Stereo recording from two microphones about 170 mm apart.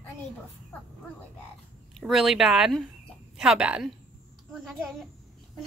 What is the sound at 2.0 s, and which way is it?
Speech, centre (ahead or behind).